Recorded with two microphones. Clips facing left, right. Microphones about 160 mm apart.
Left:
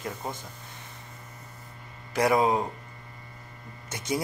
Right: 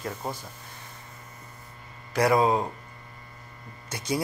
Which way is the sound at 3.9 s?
20° left (ahead or behind).